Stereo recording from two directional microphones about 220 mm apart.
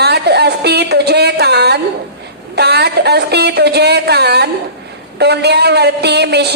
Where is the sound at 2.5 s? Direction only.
50° right (ahead or behind).